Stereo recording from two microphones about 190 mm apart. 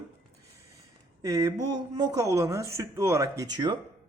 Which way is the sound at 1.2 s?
20° right (ahead or behind).